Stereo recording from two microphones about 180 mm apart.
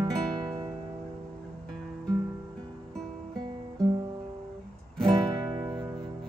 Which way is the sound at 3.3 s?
20° right (ahead or behind).